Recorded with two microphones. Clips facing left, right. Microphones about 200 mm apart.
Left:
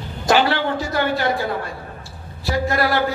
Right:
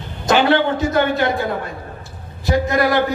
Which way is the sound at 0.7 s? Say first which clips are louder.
Right 4 dB; 20° right (ahead or behind).